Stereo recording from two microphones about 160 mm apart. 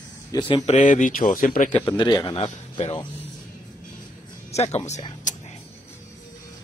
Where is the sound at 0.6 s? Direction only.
50° left (ahead or behind).